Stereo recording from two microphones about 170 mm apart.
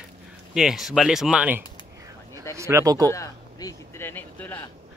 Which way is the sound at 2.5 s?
15° right (ahead or behind).